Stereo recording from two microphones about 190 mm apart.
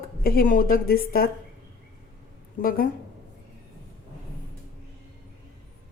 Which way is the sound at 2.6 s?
50° left (ahead or behind).